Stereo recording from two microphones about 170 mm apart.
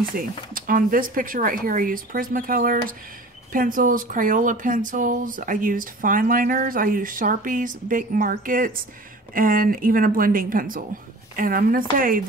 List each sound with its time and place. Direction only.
0.1 s speech: 55° right (ahead or behind)